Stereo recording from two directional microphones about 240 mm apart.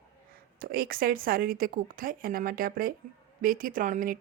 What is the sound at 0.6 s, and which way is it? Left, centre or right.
A woman's voice, right.